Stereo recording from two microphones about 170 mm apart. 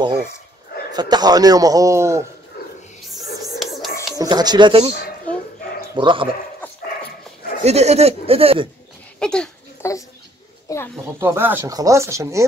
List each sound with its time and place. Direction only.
0.9 s a man's voice: 25° right (ahead or behind)
3.1 s music: centre (ahead or behind)
4.2 s a man's voice: 25° right (ahead or behind)
5.3 s dog: 10° left (ahead or behind)
5.9 s a man's voice: 30° right (ahead or behind)
7.6 s speech: 40° right (ahead or behind)
9.2 s speech: 5° left (ahead or behind)
9.8 s a sound: 15° left (ahead or behind)
10.7 s speech: 20° left (ahead or behind)
11.1 s speech: 15° right (ahead or behind)